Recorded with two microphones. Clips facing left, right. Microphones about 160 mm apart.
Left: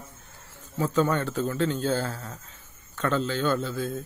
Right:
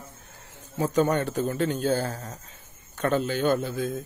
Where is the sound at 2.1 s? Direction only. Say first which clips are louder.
Right 1 dB; 35° right (ahead or behind).